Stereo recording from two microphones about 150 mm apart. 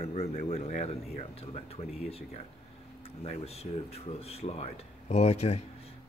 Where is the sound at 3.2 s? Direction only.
45° left (ahead or behind).